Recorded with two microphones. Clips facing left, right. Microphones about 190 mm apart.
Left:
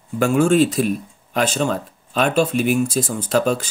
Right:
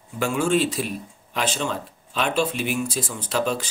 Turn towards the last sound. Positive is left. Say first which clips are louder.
# left 6 dB
turn(degrees=45)  # may be behind; listen again after turning